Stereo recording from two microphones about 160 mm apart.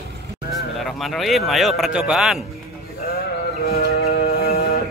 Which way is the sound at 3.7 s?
75° left (ahead or behind).